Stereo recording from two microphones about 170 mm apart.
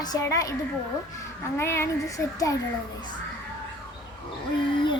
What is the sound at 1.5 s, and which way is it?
A child's voice, 15° left (ahead or behind).